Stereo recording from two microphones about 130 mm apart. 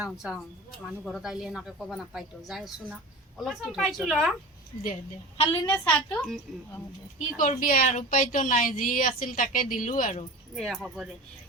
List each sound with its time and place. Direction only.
0.0 s speech: 5° right (ahead or behind)
5.4 s a woman's voice: 40° left (ahead or behind)
5.7 s a woman's voice: 10° left (ahead or behind)
7.2 s a woman's voice: 90° left
10.5 s speech: centre (ahead or behind)